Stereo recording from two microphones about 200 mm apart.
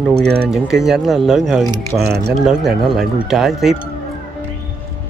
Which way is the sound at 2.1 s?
55° right (ahead or behind).